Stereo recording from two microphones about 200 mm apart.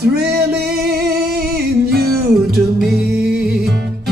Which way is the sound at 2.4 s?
Centre (ahead or behind).